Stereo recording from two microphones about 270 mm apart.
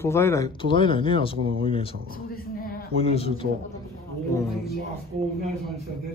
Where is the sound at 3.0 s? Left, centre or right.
Left.